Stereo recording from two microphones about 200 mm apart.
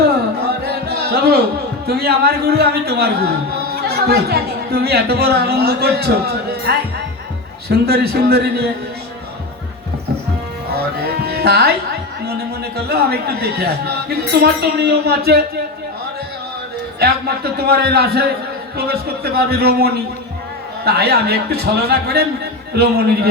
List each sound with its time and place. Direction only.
0.4 s music: 50° right (ahead or behind)
1.9 s a man's voice: 50° right (ahead or behind)
11.3 s music: 50° right (ahead or behind)
12.2 s a man's voice: 50° right (ahead or behind)
17.0 s a man's voice: 50° right (ahead or behind)